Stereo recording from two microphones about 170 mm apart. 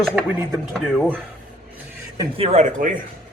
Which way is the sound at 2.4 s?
40° right (ahead or behind).